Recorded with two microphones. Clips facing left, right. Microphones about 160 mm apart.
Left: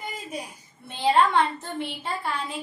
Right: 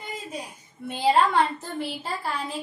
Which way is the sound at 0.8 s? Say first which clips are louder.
Even; 10° right (ahead or behind).